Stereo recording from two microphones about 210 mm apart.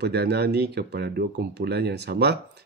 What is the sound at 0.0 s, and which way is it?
Speech, 50° right (ahead or behind).